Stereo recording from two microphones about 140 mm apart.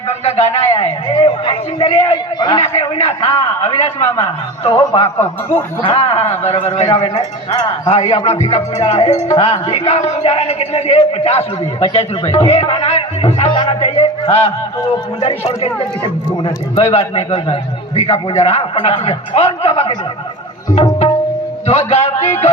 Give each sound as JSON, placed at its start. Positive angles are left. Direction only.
{"t": 0.1, "sound": "a man's voice", "side_deg": 50}
{"t": 2.7, "sound": "a man's voice", "side_deg": 50}
{"t": 20.7, "sound": "tabla", "side_deg": 45}
{"t": 21.7, "sound": "a man's voice", "side_deg": 50}